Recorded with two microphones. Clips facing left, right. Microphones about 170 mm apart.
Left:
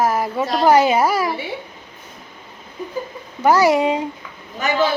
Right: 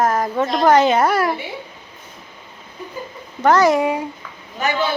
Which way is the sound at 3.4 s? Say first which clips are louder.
Even; 10° left (ahead or behind).